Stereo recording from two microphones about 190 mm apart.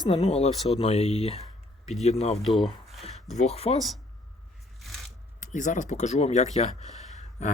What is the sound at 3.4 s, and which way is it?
Speech, 35° left (ahead or behind).